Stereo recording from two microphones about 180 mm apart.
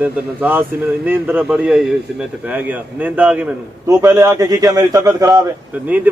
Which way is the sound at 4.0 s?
20° right (ahead or behind).